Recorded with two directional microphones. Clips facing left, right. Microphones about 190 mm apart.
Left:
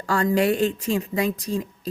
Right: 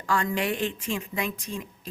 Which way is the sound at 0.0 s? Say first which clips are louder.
Left 6 dB; 40° left (ahead or behind).